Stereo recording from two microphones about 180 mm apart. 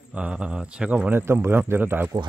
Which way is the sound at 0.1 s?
5° right (ahead or behind).